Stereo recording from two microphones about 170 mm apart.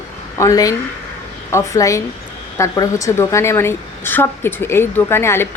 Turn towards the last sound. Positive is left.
turn(degrees=15)  # may be behind; listen again after turning